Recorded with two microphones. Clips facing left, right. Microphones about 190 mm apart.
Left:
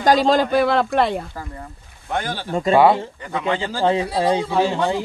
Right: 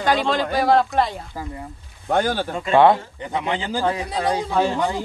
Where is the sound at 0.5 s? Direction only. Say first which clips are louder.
Left 1 dB; 65° left (ahead or behind).